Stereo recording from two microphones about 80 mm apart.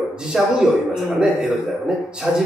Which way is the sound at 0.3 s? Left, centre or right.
Centre.